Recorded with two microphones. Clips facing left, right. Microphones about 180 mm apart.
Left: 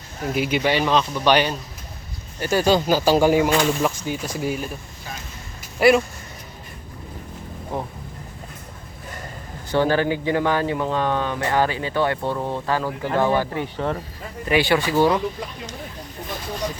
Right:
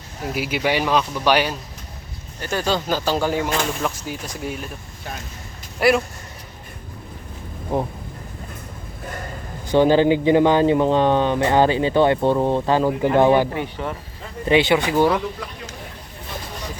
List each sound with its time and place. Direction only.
0.3 s speech: 5° right (ahead or behind)
2.4 s speech: 10° left (ahead or behind)
3.9 s speech: centre (ahead or behind)
5.8 s speech: centre (ahead or behind)
7.7 s speech: 15° right (ahead or behind)
9.6 s speech: 15° right (ahead or behind)